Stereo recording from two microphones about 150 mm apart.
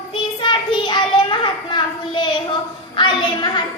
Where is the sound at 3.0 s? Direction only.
30° left (ahead or behind).